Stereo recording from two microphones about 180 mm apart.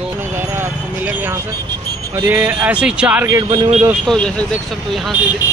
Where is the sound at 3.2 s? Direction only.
25° right (ahead or behind).